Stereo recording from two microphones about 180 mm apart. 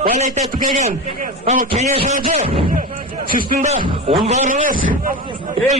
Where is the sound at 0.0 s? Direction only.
45° right (ahead or behind).